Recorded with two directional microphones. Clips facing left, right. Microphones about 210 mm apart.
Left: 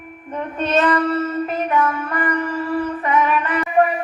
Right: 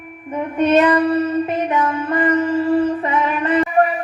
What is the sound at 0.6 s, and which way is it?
Child singing, 10° right (ahead or behind).